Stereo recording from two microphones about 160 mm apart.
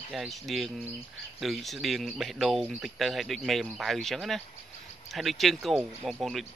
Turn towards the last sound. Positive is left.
turn(degrees=0)  # may be behind; listen again after turning